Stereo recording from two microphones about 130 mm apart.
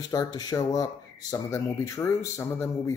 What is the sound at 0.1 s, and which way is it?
Speech, 30° left (ahead or behind).